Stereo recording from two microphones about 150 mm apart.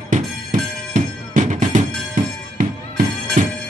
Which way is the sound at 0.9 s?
55° right (ahead or behind).